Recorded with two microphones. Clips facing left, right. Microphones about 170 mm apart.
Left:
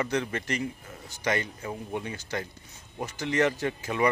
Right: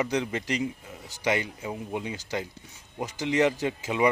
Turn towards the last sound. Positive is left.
turn(degrees=-15)  # may be behind; listen again after turning